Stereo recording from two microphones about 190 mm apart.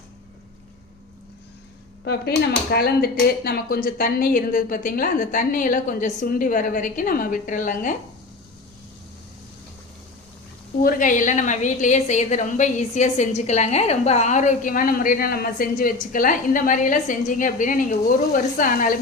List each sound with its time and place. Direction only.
2.7 s a woman's voice: 55° left (ahead or behind)
10.8 s a woman's voice: 45° left (ahead or behind)